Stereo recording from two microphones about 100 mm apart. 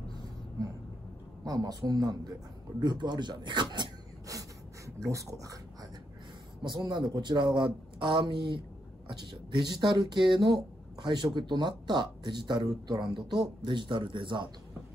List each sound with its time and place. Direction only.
1.4 s a woman's voice: 40° right (ahead or behind)
4.3 s a sound: 35° right (ahead or behind)
6.6 s speech: 50° right (ahead or behind)